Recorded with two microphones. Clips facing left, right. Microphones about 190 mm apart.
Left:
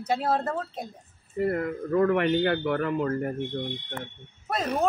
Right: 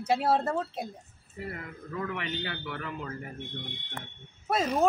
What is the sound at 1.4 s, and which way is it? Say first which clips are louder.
A man's voice: left 13 dB; 55° left (ahead or behind).